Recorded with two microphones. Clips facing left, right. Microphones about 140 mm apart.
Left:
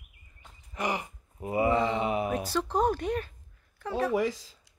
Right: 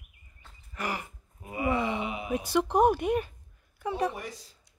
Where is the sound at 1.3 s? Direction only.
30° left (ahead or behind).